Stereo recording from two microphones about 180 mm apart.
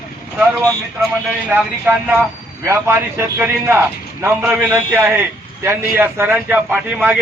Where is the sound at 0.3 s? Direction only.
15° right (ahead or behind).